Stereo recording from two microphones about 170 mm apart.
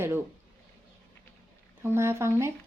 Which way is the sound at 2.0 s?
15° right (ahead or behind).